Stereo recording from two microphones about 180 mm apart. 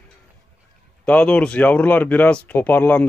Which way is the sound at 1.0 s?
5° left (ahead or behind).